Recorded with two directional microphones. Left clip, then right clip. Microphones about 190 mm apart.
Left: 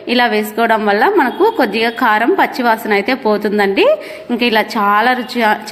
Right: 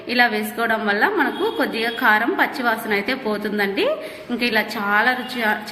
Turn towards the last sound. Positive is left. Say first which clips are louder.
# left 7 dB
turn(degrees=35)  # may be behind; listen again after turning